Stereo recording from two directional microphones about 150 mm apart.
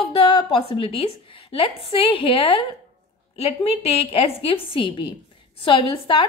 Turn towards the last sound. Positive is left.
turn(degrees=35)  # may be behind; listen again after turning